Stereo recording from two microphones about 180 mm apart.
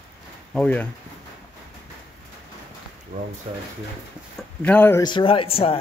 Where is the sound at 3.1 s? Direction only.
45° right (ahead or behind).